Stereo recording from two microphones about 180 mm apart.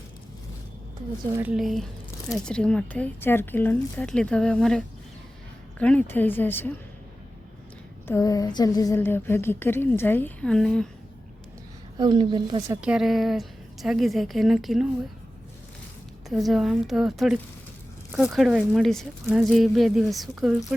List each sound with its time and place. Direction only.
1.4 s speech: 5° right (ahead or behind)
2.3 s a sound: 5° left (ahead or behind)
8.0 s a sound: 15° left (ahead or behind)
11.9 s a woman's voice: 25° right (ahead or behind)
12.8 s speech: 5° right (ahead or behind)
16.3 s speech: centre (ahead or behind)